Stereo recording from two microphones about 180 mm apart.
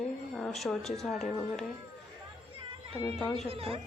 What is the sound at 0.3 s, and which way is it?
A woman's voice, centre (ahead or behind).